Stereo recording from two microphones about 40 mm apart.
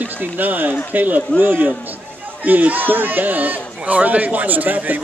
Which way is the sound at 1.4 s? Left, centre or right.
Right.